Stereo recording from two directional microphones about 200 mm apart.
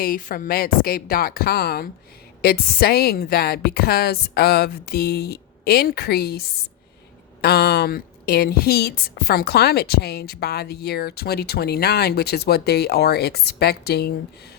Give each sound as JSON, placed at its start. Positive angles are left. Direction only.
{"t": 0.0, "sound": "a woman's voice", "side_deg": 45}
{"t": 7.4, "sound": "a woman's voice", "side_deg": 55}